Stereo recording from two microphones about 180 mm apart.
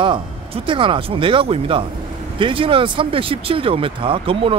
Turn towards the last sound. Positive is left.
turn(degrees=-30)  # may be behind; listen again after turning